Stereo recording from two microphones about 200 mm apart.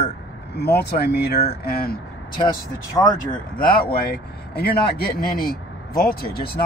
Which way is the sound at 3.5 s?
50° left (ahead or behind).